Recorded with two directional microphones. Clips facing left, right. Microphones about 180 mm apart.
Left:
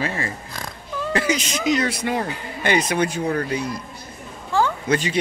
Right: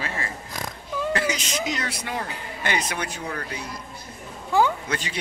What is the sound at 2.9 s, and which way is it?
Speech, 35° left (ahead or behind).